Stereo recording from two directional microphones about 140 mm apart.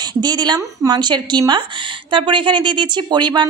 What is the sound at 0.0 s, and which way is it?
A woman's voice, 30° right (ahead or behind).